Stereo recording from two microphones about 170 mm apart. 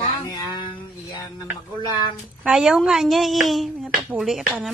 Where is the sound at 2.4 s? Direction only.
5° right (ahead or behind).